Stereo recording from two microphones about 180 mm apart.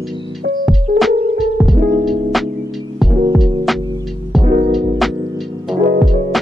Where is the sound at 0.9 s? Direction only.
50° right (ahead or behind).